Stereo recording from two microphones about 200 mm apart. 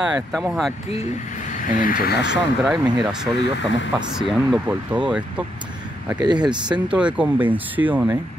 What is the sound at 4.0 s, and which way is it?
Speech, centre (ahead or behind).